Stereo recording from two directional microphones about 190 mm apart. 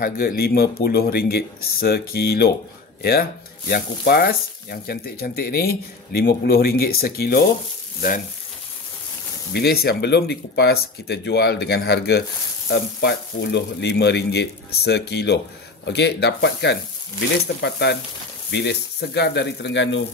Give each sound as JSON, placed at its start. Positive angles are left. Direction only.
{"t": 0.0, "sound": "speech", "side_deg": 50}
{"t": 3.0, "sound": "frying", "side_deg": 55}
{"t": 9.5, "sound": "speech", "side_deg": 55}